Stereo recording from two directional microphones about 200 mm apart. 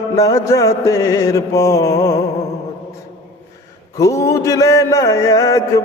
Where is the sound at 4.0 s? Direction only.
15° left (ahead or behind).